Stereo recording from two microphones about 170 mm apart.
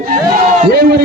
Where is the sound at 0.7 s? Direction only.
70° right (ahead or behind).